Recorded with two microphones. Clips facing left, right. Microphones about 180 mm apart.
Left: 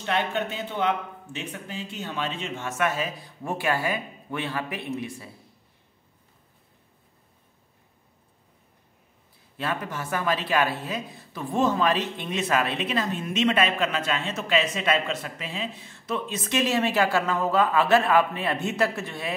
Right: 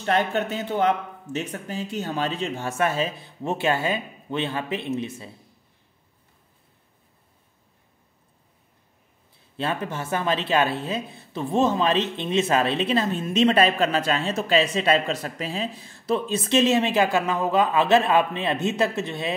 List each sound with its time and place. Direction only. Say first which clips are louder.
0.0 s speech: right 4 dB; 45° right (ahead or behind); by 5.3 s 25° right (ahead or behind)
9.6 s speech: right 3 dB; 25° right (ahead or behind)